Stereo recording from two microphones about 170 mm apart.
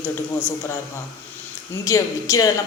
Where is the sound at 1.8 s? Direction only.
20° left (ahead or behind).